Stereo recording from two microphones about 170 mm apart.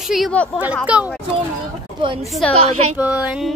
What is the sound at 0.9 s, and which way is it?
Speech, 5° right (ahead or behind).